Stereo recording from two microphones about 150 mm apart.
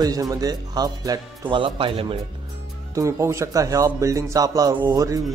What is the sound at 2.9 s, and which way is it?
Speech, 20° right (ahead or behind).